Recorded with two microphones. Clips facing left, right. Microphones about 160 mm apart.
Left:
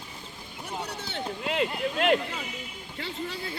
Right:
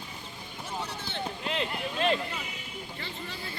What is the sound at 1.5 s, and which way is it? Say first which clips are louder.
Speech: left 6 dB; 70° left (ahead or behind).